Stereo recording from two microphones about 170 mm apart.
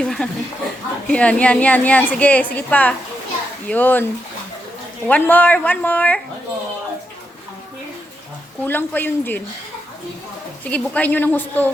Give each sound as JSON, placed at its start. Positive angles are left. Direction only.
{"t": 0.0, "sound": "a sound", "side_deg": 5}
{"t": 1.0, "sound": "a woman's voice", "side_deg": 5}
{"t": 5.0, "sound": "a woman's voice", "side_deg": 10}
{"t": 8.6, "sound": "a woman's voice", "side_deg": 10}
{"t": 10.6, "sound": "a woman's voice", "side_deg": 10}